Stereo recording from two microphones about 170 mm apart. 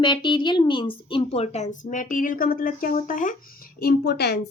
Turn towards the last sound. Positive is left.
turn(degrees=70)  # may be behind; listen again after turning